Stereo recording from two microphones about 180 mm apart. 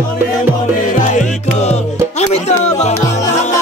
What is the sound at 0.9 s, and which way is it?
Music, 45° left (ahead or behind).